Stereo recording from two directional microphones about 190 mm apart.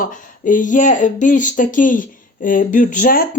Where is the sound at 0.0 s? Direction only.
45° left (ahead or behind).